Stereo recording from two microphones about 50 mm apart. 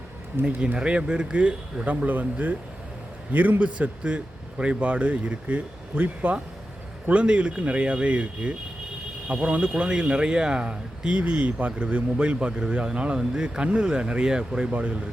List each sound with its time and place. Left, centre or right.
0.4 s speech: right